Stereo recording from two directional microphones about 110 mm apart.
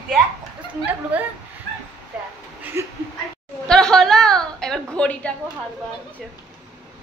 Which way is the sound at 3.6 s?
5° left (ahead or behind).